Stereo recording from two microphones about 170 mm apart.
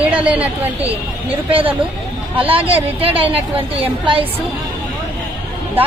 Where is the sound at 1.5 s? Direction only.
30° right (ahead or behind).